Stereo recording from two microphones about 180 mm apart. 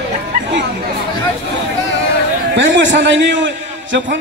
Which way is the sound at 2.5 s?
80° right.